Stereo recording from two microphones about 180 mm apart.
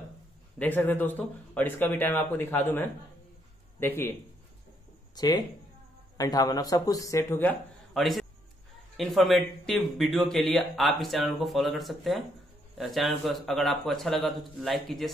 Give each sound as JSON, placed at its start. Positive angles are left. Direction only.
{"t": 0.6, "sound": "speech", "side_deg": 10}
{"t": 5.1, "sound": "speech", "side_deg": 20}
{"t": 7.9, "sound": "a man's voice", "side_deg": 0}